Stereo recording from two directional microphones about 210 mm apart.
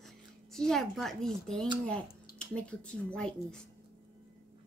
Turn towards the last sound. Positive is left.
turn(degrees=5)  # may be behind; listen again after turning